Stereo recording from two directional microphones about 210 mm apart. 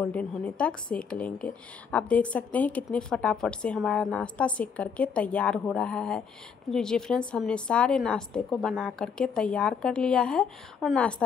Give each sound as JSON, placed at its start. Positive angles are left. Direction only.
{"t": 0.0, "sound": "speech", "side_deg": 5}